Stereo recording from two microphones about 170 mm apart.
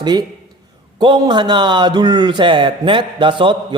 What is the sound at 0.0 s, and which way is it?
A man's voice, 25° right (ahead or behind).